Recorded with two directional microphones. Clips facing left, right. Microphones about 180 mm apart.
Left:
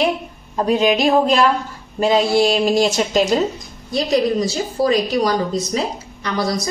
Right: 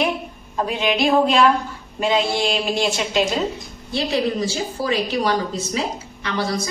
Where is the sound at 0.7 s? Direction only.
40° left (ahead or behind).